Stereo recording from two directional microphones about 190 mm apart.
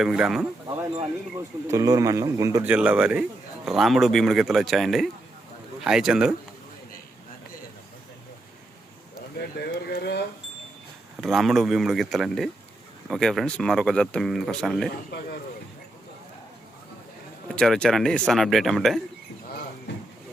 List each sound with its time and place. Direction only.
0.0 s speech: 5° right (ahead or behind)
1.4 s speech: 15° right (ahead or behind)
9.6 s speech: 55° left (ahead or behind)
11.2 s speech: centre (ahead or behind)
17.5 s speech: 5° left (ahead or behind)
19.9 s a sound: 70° left (ahead or behind)